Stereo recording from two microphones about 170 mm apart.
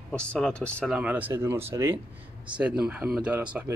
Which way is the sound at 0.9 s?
10° right (ahead or behind).